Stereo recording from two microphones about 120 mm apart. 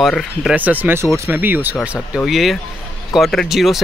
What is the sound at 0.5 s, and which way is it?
Speech, 15° right (ahead or behind).